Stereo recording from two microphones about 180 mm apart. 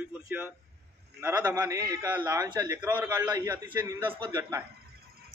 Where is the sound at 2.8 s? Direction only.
10° right (ahead or behind).